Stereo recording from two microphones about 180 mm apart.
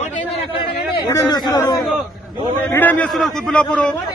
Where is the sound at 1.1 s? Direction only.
25° left (ahead or behind).